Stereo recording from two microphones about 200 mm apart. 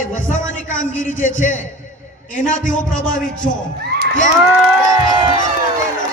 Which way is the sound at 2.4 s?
40° left (ahead or behind).